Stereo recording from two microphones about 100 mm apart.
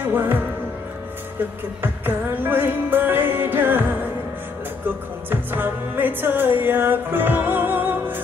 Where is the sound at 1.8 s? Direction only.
20° right (ahead or behind).